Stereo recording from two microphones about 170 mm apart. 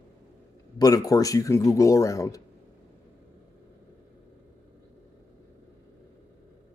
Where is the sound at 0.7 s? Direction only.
20° left (ahead or behind).